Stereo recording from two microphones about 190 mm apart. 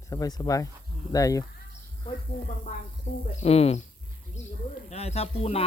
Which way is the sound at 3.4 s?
35° left (ahead or behind).